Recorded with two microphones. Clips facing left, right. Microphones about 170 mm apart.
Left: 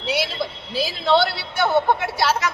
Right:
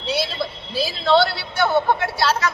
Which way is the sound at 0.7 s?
15° left (ahead or behind).